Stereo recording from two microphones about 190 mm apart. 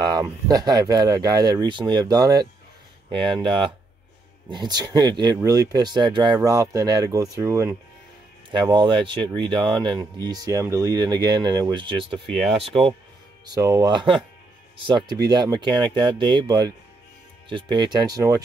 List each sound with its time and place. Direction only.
0.1 s speech: 20° right (ahead or behind)
13.5 s speech: 20° right (ahead or behind)